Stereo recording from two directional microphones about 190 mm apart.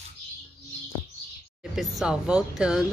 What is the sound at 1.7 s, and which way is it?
Speech, 5° right (ahead or behind).